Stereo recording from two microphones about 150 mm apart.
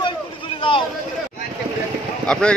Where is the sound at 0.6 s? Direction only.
35° left (ahead or behind).